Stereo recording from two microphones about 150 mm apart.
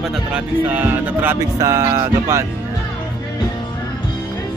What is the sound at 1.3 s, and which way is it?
Speech, 20° right (ahead or behind).